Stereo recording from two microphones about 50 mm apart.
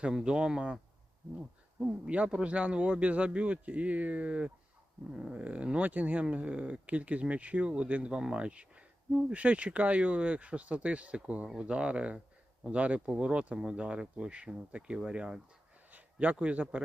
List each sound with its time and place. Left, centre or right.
0.0 s speech: centre
2.0 s speech: right
15.9 s speech: right